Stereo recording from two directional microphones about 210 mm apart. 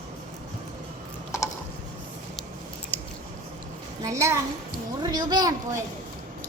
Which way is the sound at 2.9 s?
10° left (ahead or behind).